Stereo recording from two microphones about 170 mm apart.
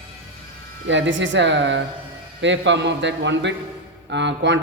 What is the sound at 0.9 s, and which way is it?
Speech, 90° right.